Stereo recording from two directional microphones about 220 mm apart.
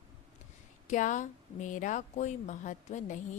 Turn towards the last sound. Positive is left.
turn(degrees=35)  # may be behind; listen again after turning